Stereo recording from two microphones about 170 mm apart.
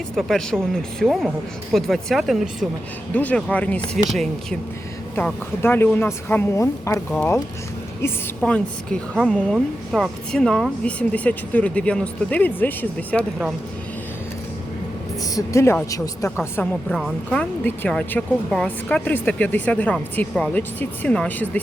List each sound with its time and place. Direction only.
0.2 s speech: centre (ahead or behind)
5.1 s speech: 10° left (ahead or behind)
8.4 s speech: 5° left (ahead or behind)
15.4 s speech: 15° left (ahead or behind)
16.9 s speech: centre (ahead or behind)